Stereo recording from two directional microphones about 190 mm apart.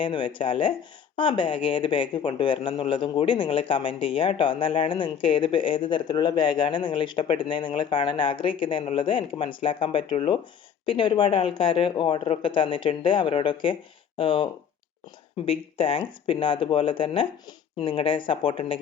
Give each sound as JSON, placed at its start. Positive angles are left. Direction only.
{"t": 0.0, "sound": "speech", "side_deg": 25}